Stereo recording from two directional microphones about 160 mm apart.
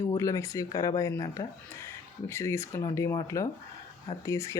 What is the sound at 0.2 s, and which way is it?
Speech, 20° left (ahead or behind).